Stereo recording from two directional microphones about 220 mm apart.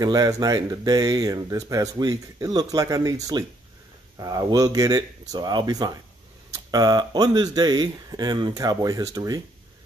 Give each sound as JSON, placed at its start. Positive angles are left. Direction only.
{"t": 0.0, "sound": "speech", "side_deg": -15}